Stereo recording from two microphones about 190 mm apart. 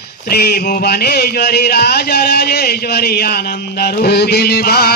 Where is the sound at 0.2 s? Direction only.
55° left (ahead or behind).